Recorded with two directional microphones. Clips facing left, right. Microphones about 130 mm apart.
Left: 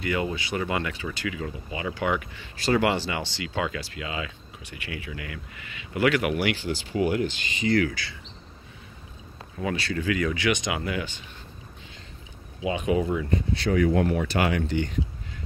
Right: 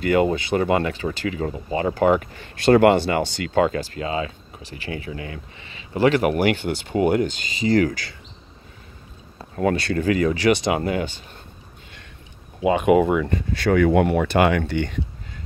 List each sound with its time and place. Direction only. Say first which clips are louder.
0.0 s speech: right 9 dB; 45° right (ahead or behind)
9.6 s speech: right 7 dB; 55° right (ahead or behind)
10.0 s speech: right 7 dB; 35° right (ahead or behind)
12.6 s speech: right 8 dB; 60° right (ahead or behind)